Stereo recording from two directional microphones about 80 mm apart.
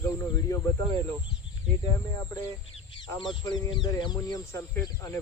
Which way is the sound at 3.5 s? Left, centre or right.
Left.